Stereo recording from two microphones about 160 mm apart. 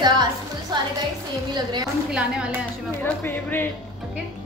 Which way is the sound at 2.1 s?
5° right (ahead or behind).